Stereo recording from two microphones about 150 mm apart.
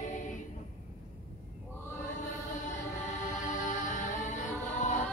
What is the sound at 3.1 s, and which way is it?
Choir, 55° left (ahead or behind).